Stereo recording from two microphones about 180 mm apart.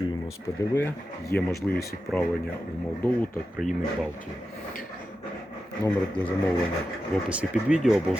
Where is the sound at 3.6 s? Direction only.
45° left (ahead or behind).